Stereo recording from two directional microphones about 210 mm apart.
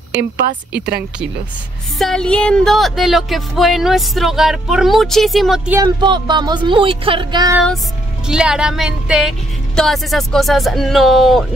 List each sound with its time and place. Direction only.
2.0 s speech: centre (ahead or behind)
5.8 s speech: 20° right (ahead or behind)
8.3 s speech: 5° right (ahead or behind)